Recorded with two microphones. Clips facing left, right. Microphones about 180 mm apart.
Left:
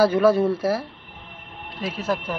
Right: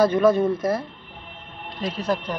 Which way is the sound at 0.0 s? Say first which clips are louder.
Even; 5° left (ahead or behind).